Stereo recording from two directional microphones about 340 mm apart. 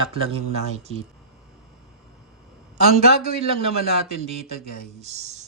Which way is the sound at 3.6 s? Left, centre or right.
Centre.